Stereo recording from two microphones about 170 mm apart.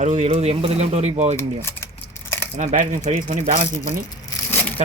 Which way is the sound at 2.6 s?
50° right (ahead or behind).